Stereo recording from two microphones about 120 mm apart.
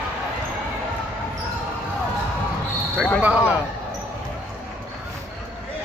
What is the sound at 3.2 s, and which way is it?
Speech, 10° right (ahead or behind).